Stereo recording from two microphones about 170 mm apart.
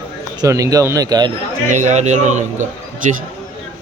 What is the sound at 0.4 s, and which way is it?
Speech, 20° right (ahead or behind).